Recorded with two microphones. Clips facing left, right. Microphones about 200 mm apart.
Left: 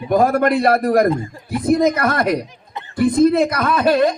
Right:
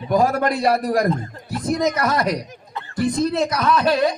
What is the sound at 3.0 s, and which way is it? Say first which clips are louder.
A man's voice: left 6 dB; 55° left (ahead or behind).